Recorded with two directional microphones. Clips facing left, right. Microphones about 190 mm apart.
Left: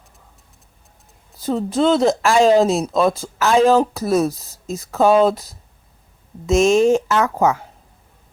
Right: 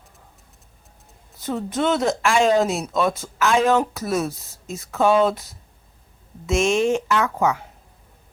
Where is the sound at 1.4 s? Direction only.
30° left (ahead or behind).